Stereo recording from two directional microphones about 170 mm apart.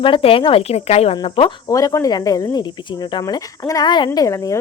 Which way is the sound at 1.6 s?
20° left (ahead or behind).